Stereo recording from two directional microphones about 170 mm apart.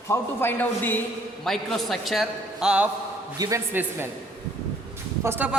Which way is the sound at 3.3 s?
20° right (ahead or behind).